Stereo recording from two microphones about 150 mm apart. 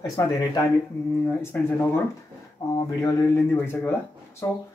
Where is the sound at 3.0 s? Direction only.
15° left (ahead or behind).